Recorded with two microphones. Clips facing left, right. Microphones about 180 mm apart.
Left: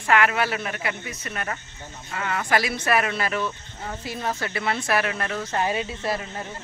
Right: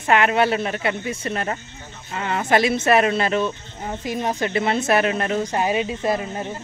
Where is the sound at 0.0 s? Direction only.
25° right (ahead or behind).